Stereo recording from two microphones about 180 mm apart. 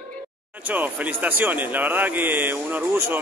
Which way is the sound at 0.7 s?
10° right (ahead or behind).